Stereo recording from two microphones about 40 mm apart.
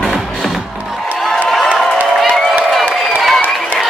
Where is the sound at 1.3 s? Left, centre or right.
Centre.